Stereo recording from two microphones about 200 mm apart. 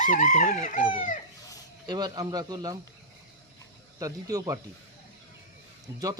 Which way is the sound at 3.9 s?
15° right (ahead or behind).